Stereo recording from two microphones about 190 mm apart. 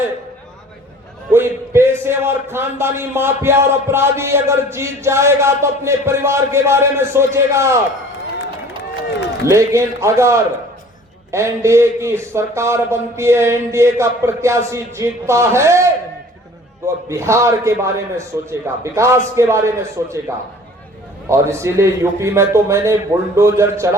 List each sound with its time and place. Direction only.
1.3 s a man's voice: 10° right (ahead or behind)
9.5 s a man's voice: 15° right (ahead or behind)
21.2 s a man's voice: 15° right (ahead or behind)